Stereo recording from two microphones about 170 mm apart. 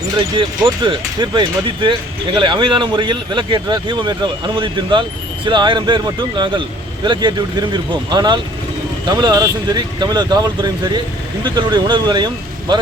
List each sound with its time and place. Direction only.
0.3 s speech: 25° right (ahead or behind)